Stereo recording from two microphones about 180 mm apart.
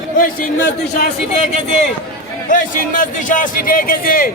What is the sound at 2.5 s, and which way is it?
A man's voice, 45° left (ahead or behind).